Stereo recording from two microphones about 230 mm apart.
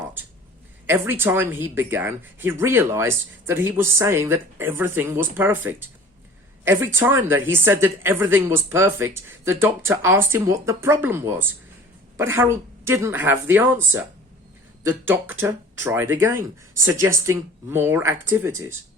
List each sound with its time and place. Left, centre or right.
0.9 s a woman's voice: centre